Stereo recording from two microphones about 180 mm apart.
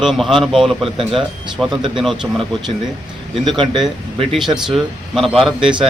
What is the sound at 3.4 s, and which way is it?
Speech, 25° right (ahead or behind).